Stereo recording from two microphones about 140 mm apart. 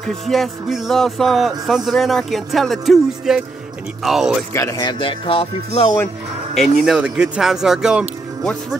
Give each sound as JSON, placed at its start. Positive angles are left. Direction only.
{"t": 0.0, "sound": "speech", "side_deg": 0}
{"t": 4.7, "sound": "speech", "side_deg": 35}
{"t": 6.5, "sound": "speech", "side_deg": 0}